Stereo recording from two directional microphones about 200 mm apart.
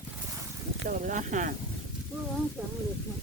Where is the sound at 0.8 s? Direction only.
40° right (ahead or behind).